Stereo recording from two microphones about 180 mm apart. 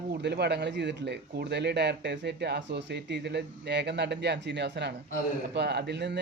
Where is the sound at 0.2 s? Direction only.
65° right (ahead or behind).